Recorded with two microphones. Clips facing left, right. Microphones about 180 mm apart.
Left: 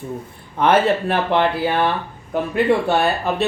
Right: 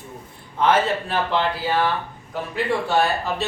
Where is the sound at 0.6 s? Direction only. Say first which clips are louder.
Left 4 dB; 60° left (ahead or behind).